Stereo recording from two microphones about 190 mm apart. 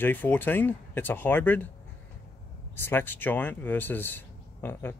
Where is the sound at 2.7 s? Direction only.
10° left (ahead or behind).